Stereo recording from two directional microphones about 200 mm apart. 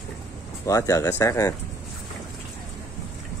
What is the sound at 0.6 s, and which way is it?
Speech, 15° left (ahead or behind).